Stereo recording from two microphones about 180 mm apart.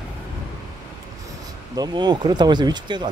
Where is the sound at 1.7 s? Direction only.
25° right (ahead or behind).